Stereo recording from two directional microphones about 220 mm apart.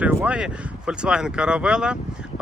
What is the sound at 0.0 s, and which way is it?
Speech, 10° right (ahead or behind).